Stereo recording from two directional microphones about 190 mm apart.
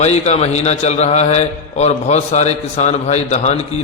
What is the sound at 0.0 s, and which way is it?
A man's voice, 35° left (ahead or behind).